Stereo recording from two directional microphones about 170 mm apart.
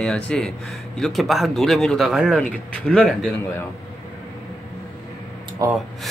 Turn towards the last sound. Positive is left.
turn(degrees=-20)  # may be behind; listen again after turning